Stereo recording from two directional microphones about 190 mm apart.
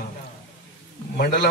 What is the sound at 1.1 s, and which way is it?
Speech, 60° left (ahead or behind).